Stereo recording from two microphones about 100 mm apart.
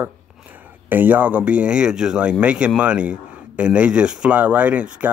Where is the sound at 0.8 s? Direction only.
20° right (ahead or behind).